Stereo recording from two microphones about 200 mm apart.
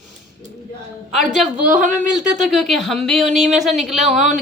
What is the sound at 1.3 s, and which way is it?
Speech, centre (ahead or behind).